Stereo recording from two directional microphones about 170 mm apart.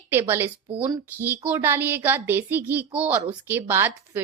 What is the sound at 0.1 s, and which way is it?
A woman's voice, 15° right (ahead or behind).